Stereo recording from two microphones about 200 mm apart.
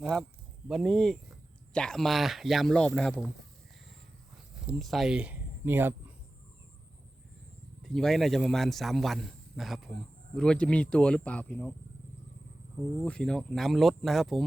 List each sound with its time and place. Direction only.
0.0 s a man's voice: centre (ahead or behind)
4.6 s speech: centre (ahead or behind)
7.8 s a man's voice: centre (ahead or behind)
13.0 s a man's voice: 5° left (ahead or behind)